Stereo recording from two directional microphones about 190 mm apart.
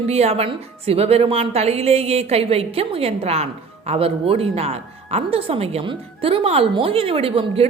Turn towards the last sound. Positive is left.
turn(degrees=-30)  # may be behind; listen again after turning